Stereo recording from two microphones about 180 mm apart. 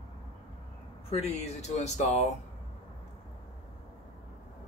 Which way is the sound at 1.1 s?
40° left (ahead or behind).